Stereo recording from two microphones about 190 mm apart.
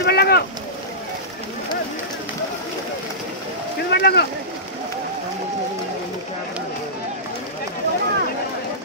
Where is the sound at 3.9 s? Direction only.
55° left (ahead or behind).